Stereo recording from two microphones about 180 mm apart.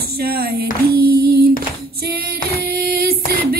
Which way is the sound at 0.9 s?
60° right (ahead or behind).